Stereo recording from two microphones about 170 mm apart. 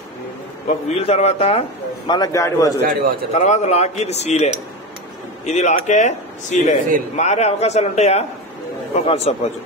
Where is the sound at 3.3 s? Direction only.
45° left (ahead or behind).